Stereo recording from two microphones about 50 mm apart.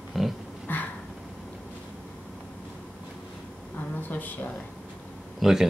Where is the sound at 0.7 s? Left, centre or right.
Left.